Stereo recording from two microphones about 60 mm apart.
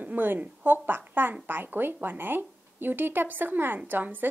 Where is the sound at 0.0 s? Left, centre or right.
Right.